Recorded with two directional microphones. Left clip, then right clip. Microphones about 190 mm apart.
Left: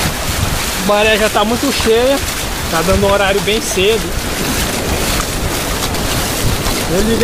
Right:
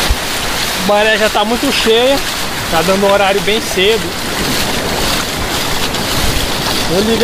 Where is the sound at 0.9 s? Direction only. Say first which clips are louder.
Right 1 dB; 25° left (ahead or behind).